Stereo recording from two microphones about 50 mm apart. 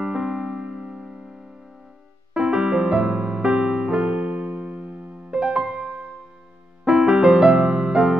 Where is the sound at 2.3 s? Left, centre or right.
Centre.